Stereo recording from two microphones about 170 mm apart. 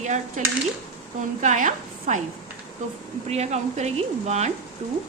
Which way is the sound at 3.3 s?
40° right (ahead or behind).